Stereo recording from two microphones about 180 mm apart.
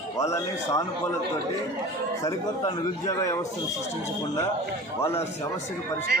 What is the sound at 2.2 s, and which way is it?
A man's voice, 20° left (ahead or behind).